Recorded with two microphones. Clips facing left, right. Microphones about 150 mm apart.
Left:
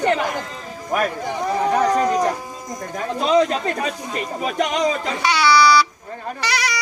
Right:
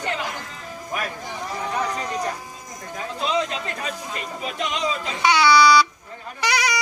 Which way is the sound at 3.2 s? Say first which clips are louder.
Left 8 dB; 45° left (ahead or behind).